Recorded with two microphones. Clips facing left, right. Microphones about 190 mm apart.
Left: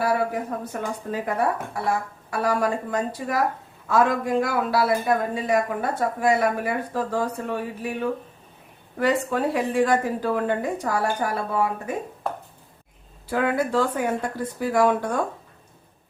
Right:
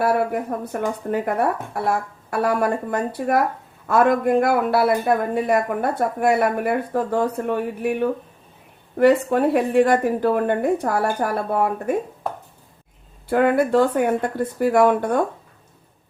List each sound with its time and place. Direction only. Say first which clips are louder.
0.0 s speech: right 3 dB; 55° right (ahead or behind)
9.0 s speech: right 7 dB; 55° right (ahead or behind)
13.2 s speech: right 6 dB; 55° right (ahead or behind)